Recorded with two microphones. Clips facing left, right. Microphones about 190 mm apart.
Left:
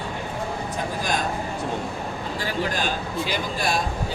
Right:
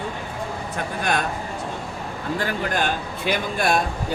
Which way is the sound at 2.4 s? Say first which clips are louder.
Right 1 dB; 55° right (ahead or behind).